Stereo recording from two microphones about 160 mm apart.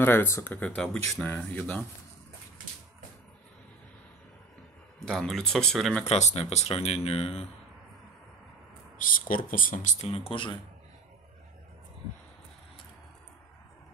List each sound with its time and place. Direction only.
0.0 s speech: 15° left (ahead or behind)
5.0 s speech: centre (ahead or behind)
6.0 s speech: 45° left (ahead or behind)
8.9 s speech: 60° left (ahead or behind); by 10.5 s 35° left (ahead or behind)